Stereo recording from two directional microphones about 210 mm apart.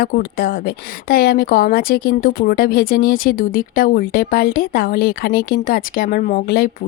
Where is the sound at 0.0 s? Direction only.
45° left (ahead or behind).